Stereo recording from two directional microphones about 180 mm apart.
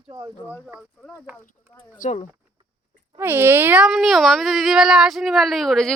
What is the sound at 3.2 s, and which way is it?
Speech, 10° right (ahead or behind).